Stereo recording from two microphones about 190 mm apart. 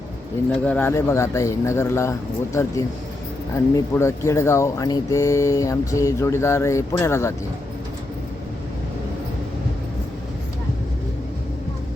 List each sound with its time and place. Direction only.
0.5 s speech: 5° left (ahead or behind)